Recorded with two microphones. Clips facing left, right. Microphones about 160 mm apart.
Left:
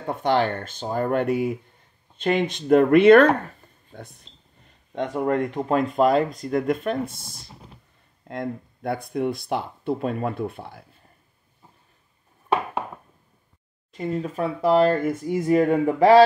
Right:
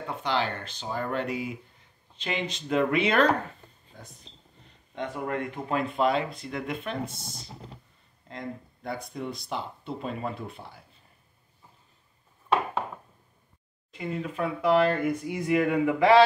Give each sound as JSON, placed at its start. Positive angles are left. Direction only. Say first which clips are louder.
{"t": 0.0, "sound": "speech", "louder": "left 7 dB", "side_deg": 50}
{"t": 4.9, "sound": "speech", "louder": "left 8 dB", "side_deg": 45}
{"t": 8.3, "sound": "speech", "louder": "left 7 dB", "side_deg": 55}
{"t": 13.9, "sound": "speech", "louder": "left 5 dB", "side_deg": 40}